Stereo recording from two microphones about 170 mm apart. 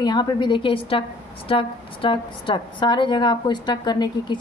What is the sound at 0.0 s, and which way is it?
A woman's voice, 25° left (ahead or behind).